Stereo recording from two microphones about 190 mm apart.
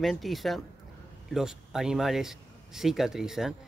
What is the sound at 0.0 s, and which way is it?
Speech, centre (ahead or behind).